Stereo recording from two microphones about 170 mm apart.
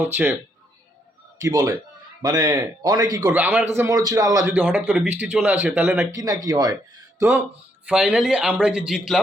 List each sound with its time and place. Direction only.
0.0 s speech: 10° right (ahead or behind)
1.4 s a man's voice: 20° right (ahead or behind)
3.3 s speech: 10° right (ahead or behind)
3.8 s a man's voice: 20° right (ahead or behind)
4.5 s a man's voice: 10° right (ahead or behind)